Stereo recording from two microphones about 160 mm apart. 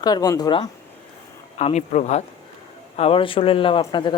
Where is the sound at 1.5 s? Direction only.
45° left (ahead or behind).